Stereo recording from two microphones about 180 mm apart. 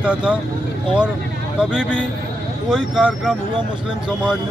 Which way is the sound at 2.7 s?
5° right (ahead or behind).